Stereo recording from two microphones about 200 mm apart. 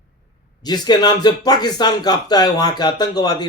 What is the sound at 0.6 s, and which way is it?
Speech, 20° left (ahead or behind).